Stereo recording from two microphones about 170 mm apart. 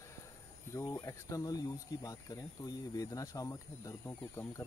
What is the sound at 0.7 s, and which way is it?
Speech, 15° left (ahead or behind).